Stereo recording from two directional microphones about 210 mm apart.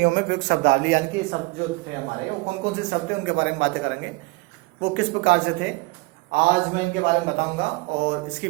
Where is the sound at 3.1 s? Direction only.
55° right (ahead or behind).